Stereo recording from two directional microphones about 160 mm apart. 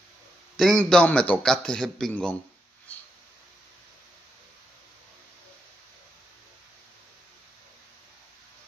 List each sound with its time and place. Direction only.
0.6 s a man's voice: 5° left (ahead or behind)